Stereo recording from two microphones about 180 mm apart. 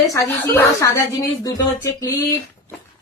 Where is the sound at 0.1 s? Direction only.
15° left (ahead or behind).